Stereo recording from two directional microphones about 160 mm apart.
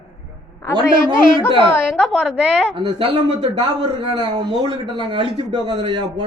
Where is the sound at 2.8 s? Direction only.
30° right (ahead or behind).